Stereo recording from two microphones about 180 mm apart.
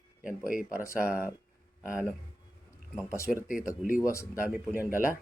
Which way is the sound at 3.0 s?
15° left (ahead or behind).